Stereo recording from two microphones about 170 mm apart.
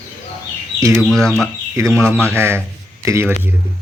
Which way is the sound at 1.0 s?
Centre (ahead or behind).